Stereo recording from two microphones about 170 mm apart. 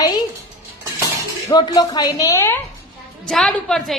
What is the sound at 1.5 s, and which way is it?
A woman's voice, 25° left (ahead or behind).